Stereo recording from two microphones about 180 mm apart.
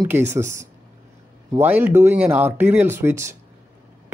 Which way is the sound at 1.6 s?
10° right (ahead or behind).